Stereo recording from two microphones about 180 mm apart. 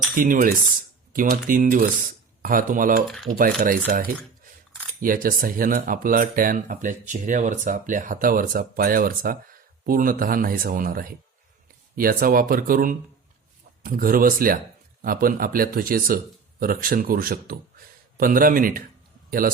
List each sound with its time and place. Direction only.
0.2 s speech: 50° right (ahead or behind)